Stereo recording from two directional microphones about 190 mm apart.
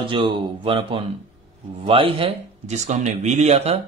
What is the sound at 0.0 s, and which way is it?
A man's voice, 25° right (ahead or behind).